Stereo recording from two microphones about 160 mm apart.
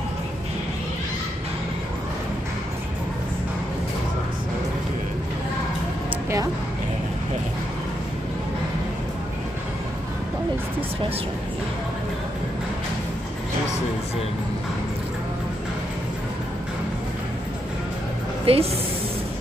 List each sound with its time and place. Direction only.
18.4 s speech: 35° right (ahead or behind)